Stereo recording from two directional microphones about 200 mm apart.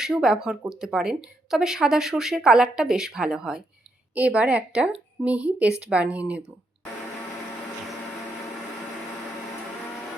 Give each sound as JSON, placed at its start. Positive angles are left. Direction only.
{"t": 0.0, "sound": "speech", "side_deg": -5}